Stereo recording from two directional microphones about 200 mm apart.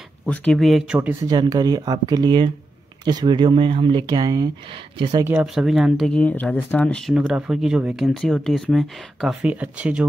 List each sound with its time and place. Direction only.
0.3 s speech: 5° left (ahead or behind)
1.2 s speech: 20° right (ahead or behind)